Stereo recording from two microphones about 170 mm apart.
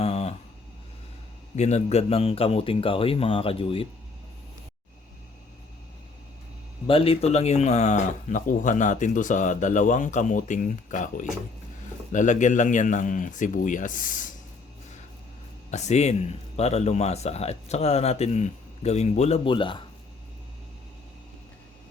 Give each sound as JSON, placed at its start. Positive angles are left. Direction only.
{"t": 0.0, "sound": "a sound", "side_deg": 35}
{"t": 1.5, "sound": "a man's voice", "side_deg": 40}
{"t": 6.8, "sound": "speech", "side_deg": 35}
{"t": 15.7, "sound": "a man's voice", "side_deg": 40}